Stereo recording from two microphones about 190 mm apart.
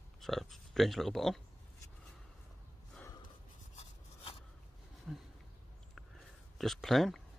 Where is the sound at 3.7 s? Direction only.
30° left (ahead or behind).